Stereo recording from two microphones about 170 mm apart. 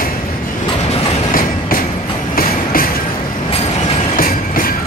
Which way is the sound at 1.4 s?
55° left (ahead or behind).